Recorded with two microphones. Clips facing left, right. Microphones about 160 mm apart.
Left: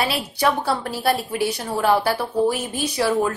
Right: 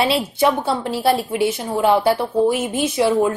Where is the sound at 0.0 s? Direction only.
25° right (ahead or behind).